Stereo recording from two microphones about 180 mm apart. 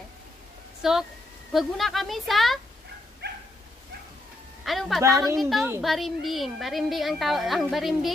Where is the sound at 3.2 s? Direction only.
65° right (ahead or behind).